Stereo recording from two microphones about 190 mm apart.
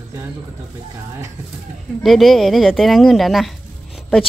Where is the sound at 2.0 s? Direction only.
Centre (ahead or behind).